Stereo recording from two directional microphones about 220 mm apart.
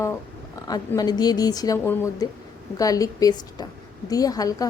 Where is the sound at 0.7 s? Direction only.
15° left (ahead or behind).